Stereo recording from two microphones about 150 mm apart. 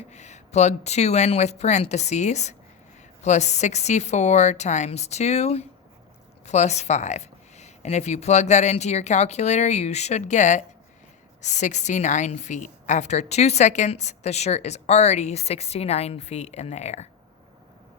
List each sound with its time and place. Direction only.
0.1 s a woman's voice: 50° left (ahead or behind)